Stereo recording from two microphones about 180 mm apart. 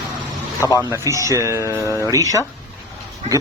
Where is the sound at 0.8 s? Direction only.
15° right (ahead or behind).